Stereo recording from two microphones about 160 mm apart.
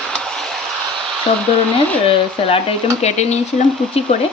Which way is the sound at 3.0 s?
45° left (ahead or behind).